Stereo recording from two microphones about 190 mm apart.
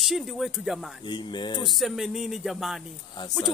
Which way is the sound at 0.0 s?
Centre (ahead or behind).